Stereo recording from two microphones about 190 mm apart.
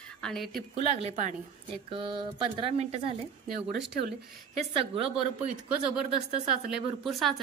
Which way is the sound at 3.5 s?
60° right (ahead or behind).